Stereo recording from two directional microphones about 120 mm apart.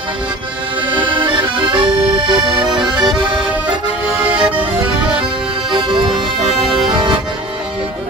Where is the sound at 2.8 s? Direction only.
35° right (ahead or behind).